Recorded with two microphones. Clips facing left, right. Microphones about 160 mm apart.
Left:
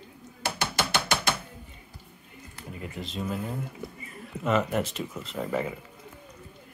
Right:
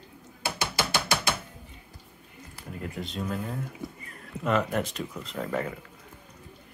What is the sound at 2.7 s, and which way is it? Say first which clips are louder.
Speech: right 2 dB; centre (ahead or behind).